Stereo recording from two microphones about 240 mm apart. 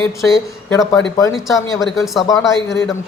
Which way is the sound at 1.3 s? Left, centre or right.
Centre.